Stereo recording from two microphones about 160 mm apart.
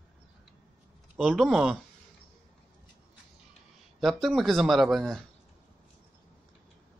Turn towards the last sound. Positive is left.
turn(degrees=0)  # may be behind; listen again after turning